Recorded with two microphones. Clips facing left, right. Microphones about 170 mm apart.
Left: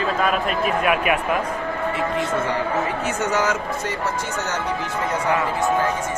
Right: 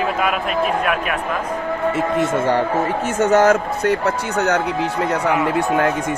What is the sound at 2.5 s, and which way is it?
Speech, 50° right (ahead or behind).